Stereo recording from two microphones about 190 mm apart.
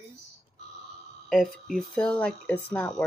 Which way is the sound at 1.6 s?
Centre (ahead or behind).